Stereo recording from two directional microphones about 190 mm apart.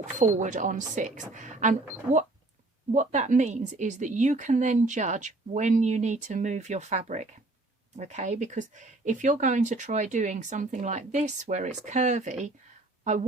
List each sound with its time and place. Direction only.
0.0 s speech: 40° right (ahead or behind)
2.9 s speech: 40° right (ahead or behind)